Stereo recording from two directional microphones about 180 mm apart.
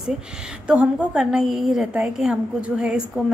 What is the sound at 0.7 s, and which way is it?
A woman's voice, 5° right (ahead or behind).